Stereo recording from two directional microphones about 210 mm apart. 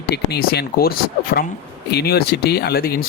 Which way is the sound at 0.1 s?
50° left (ahead or behind).